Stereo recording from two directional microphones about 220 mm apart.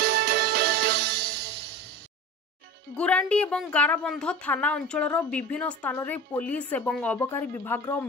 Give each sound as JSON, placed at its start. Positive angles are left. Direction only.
{"t": 0.0, "sound": "music", "side_deg": -45}
{"t": 3.0, "sound": "a woman's voice", "side_deg": 5}